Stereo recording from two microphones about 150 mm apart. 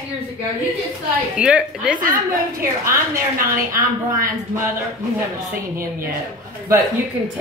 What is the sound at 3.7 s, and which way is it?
Speech, 20° right (ahead or behind).